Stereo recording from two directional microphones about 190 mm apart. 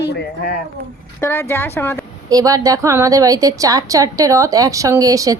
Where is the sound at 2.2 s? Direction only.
20° right (ahead or behind).